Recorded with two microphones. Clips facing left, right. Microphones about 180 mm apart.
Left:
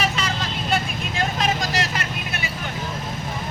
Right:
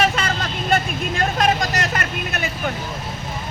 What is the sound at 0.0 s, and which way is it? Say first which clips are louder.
Vehicle: right 4 dB; 55° right (ahead or behind).